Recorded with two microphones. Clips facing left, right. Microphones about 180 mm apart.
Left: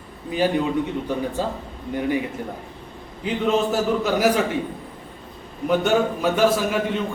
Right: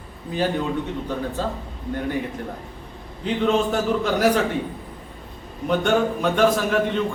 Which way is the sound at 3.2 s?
5° left (ahead or behind).